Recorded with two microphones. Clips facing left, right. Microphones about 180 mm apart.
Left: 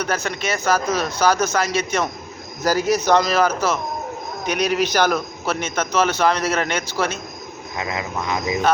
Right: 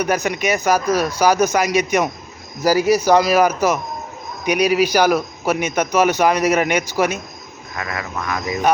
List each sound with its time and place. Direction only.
0.0 s a man's voice: 15° right (ahead or behind)
7.8 s speech: 20° left (ahead or behind)